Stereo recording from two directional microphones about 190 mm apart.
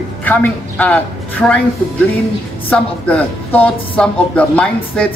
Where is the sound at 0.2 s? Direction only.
10° left (ahead or behind).